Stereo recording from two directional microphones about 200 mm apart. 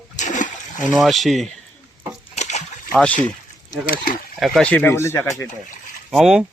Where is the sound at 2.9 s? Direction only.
5° left (ahead or behind).